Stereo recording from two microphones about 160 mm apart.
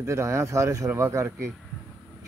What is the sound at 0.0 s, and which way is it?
Speech, 20° right (ahead or behind).